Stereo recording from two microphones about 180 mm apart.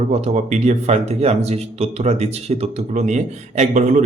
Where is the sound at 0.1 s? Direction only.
40° right (ahead or behind).